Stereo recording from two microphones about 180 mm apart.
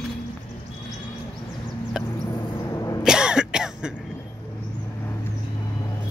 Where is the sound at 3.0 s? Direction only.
5° right (ahead or behind).